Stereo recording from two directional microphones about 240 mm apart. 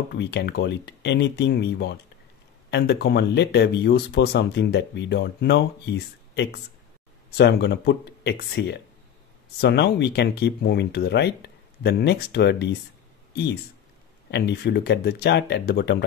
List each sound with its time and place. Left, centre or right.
0.1 s speech: left
14.3 s speech: left